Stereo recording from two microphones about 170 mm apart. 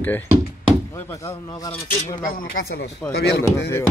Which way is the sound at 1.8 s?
50° left (ahead or behind).